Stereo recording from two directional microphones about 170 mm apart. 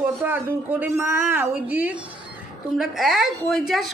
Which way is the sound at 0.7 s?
15° right (ahead or behind).